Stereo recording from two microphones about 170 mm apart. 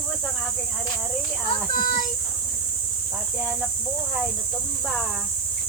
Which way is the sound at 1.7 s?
55° left (ahead or behind).